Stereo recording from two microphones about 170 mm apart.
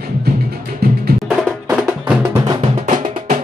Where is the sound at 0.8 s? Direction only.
70° right (ahead or behind).